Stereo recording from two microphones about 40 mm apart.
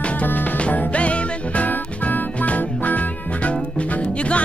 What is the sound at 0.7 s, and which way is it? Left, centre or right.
Music, left.